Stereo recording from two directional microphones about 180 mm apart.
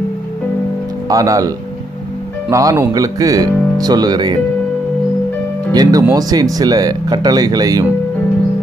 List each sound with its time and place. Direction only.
1.0 s speech: 20° right (ahead or behind)
2.5 s speech: 15° right (ahead or behind)
5.7 s speech: 20° right (ahead or behind)